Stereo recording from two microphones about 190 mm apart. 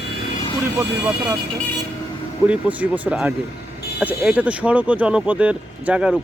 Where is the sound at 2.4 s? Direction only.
5° right (ahead or behind).